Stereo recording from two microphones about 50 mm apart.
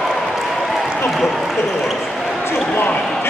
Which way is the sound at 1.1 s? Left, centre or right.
Centre.